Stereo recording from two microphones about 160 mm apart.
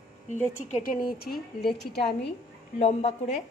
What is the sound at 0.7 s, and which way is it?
Speech, 60° left (ahead or behind).